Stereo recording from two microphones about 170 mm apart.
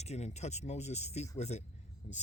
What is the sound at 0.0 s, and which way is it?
Speech, 40° left (ahead or behind).